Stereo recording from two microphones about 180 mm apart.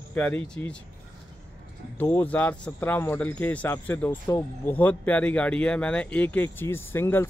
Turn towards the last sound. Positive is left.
turn(degrees=10)  # may be behind; listen again after turning